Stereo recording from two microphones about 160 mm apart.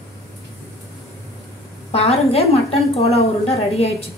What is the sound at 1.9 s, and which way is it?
A woman's voice, 40° left (ahead or behind).